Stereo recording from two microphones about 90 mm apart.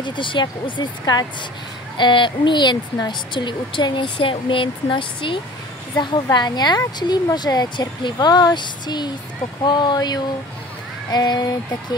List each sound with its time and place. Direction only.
0.0 s a woman's voice: 65° left (ahead or behind)
6.3 s a woman's voice: 50° left (ahead or behind)